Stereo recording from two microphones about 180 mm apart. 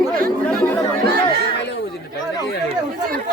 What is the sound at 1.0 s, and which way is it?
Chatter, 65° right (ahead or behind).